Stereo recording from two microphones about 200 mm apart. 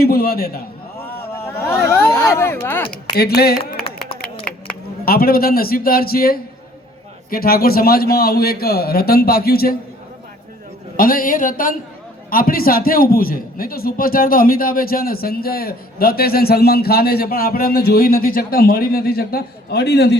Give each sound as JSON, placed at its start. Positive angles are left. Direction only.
{"t": 0.0, "sound": "a man's voice", "side_deg": 50}
{"t": 1.5, "sound": "speech", "side_deg": 15}
{"t": 3.2, "sound": "a man's voice", "side_deg": 50}
{"t": 5.0, "sound": "a man's voice", "side_deg": 50}
{"t": 10.9, "sound": "a man's voice", "side_deg": 45}